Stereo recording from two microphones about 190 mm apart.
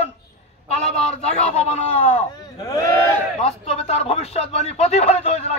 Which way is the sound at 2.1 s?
15° left (ahead or behind).